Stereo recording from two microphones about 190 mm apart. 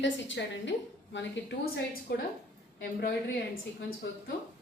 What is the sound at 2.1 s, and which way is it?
Speech, 55° left (ahead or behind).